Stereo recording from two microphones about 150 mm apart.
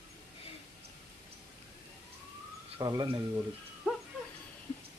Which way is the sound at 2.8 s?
25° right (ahead or behind).